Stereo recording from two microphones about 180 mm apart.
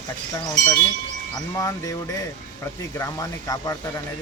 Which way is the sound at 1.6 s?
20° left (ahead or behind).